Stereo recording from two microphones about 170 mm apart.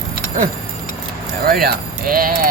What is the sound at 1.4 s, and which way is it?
Speech, 65° right (ahead or behind).